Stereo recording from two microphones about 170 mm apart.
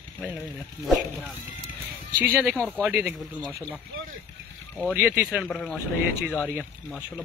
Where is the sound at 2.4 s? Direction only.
Centre (ahead or behind).